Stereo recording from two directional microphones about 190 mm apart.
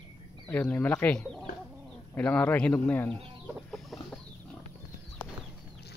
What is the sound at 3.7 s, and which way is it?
Chicken, centre (ahead or behind).